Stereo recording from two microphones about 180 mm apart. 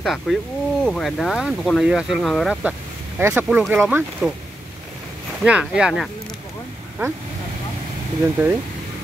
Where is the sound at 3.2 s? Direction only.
10° right (ahead or behind).